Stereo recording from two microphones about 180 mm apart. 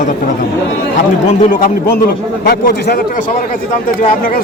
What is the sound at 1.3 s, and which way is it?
Speech, 50° left (ahead or behind).